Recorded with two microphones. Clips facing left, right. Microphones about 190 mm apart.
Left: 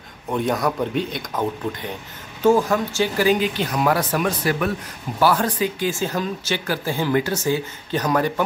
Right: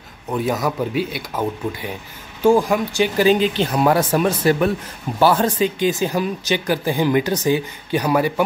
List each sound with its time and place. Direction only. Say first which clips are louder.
0.3 s speech: right 1 dB; 5° right (ahead or behind)